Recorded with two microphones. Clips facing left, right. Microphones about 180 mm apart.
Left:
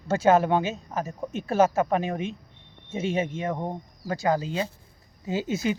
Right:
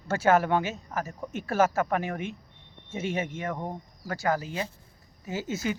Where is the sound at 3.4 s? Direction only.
20° left (ahead or behind).